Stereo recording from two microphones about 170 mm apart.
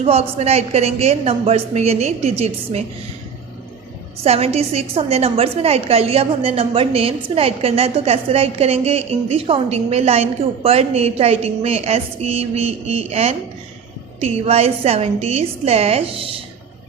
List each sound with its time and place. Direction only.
0.0 s a woman's voice: 40° right (ahead or behind)
4.2 s a woman's voice: 35° right (ahead or behind)